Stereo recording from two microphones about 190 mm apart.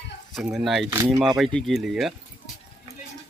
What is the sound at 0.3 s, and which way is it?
Speech, centre (ahead or behind).